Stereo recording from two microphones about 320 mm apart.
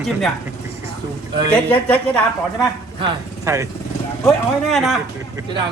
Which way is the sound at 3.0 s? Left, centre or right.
Centre.